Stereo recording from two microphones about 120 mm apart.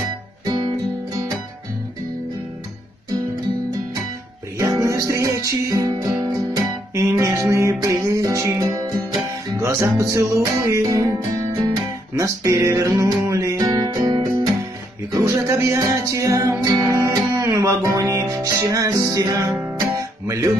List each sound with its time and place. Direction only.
0.5 s music: 30° right (ahead or behind)
4.6 s music: 25° right (ahead or behind)
6.9 s music: 25° right (ahead or behind)
19.4 s guitar: 20° right (ahead or behind)